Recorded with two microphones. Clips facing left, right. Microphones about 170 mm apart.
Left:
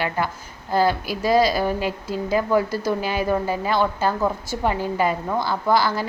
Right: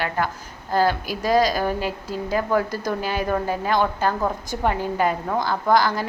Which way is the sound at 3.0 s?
45° right (ahead or behind).